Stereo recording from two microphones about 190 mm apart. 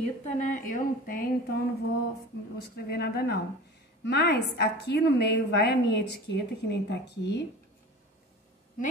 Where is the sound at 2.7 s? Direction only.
55° left (ahead or behind).